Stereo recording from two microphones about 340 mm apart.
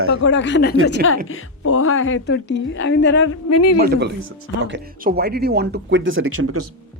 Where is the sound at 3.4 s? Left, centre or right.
Left.